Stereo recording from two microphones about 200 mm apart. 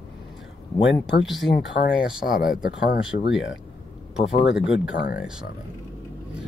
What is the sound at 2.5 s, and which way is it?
Speech, 45° left (ahead or behind).